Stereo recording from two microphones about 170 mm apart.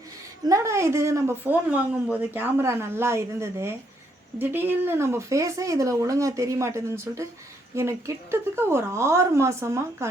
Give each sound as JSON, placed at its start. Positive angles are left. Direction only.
{"t": 0.4, "sound": "a woman's voice", "side_deg": -20}